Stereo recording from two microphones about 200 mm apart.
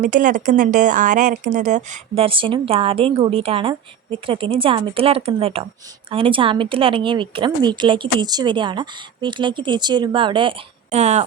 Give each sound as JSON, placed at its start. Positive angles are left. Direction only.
{"t": 0.0, "sound": "speech", "side_deg": -40}